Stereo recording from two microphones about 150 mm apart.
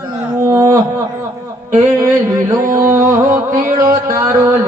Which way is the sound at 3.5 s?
65° right (ahead or behind).